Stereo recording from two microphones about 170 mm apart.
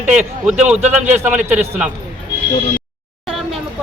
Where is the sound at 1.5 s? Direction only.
10° right (ahead or behind).